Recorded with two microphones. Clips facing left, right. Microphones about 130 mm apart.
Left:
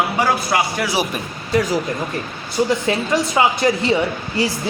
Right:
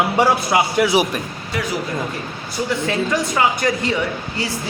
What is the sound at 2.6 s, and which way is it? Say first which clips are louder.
Speech: left 2 dB; 30° left (ahead or behind).